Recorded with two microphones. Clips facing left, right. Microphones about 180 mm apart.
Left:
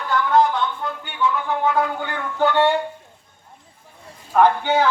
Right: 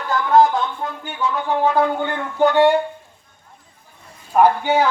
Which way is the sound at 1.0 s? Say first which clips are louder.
Even; 35° right (ahead or behind).